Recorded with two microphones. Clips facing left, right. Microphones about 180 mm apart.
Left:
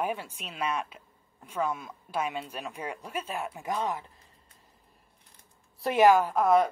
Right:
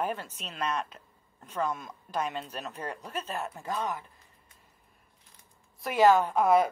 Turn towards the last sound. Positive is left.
turn(degrees=0)  # may be behind; listen again after turning